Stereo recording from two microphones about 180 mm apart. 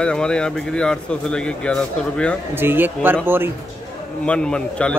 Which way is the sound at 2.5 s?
10° right (ahead or behind).